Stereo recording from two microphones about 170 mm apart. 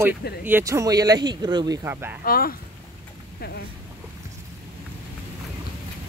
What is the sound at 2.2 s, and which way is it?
Speech, 60° left (ahead or behind).